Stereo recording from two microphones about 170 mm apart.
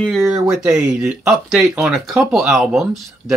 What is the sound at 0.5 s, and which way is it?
Speech, 5° right (ahead or behind).